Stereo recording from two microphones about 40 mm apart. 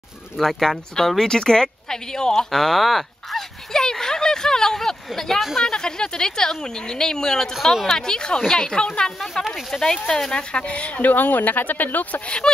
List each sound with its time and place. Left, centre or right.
0.4 s speech: centre
2.5 s speech: centre
3.7 s a sound: centre
5.4 s speech: centre
5.7 s speech: centre
10.7 s speech: left
11.1 s speech: left
12.4 s speech: centre